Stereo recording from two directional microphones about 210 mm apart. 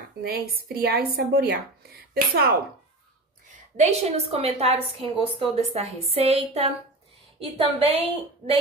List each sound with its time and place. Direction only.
0.2 s a woman's voice: 45° right (ahead or behind)
3.7 s a woman's voice: 30° right (ahead or behind)